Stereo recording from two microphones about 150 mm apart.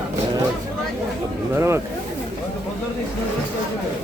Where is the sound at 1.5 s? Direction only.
15° right (ahead or behind).